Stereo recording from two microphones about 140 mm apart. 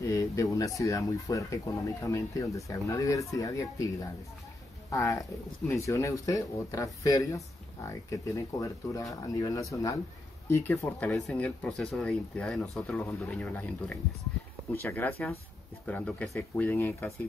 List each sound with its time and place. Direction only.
0.0 s speech: 25° left (ahead or behind)